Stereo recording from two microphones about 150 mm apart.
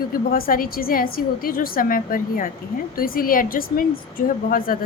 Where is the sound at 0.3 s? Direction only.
75° left (ahead or behind).